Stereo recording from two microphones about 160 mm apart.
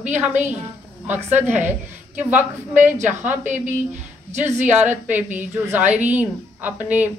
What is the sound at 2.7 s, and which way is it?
Speech, 50° right (ahead or behind).